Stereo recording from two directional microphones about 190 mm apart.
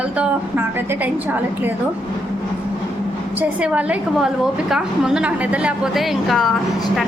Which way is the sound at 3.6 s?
5° right (ahead or behind).